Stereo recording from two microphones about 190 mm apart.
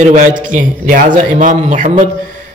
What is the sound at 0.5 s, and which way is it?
A man's voice, 45° right (ahead or behind).